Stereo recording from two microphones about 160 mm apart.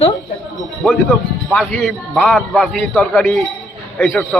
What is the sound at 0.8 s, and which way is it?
A man's voice, 5° right (ahead or behind).